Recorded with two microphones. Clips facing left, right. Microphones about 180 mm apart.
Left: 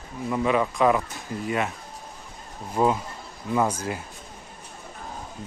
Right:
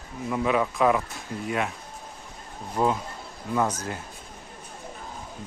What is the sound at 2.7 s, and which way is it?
Speech, 5° left (ahead or behind).